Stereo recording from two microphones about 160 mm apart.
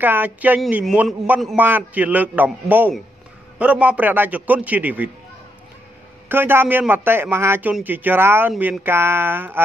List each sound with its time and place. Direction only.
0.0 s a man's voice: 10° right (ahead or behind)
6.2 s a man's voice: 15° right (ahead or behind)